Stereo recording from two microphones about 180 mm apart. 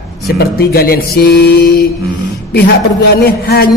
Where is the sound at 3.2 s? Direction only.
60° left (ahead or behind).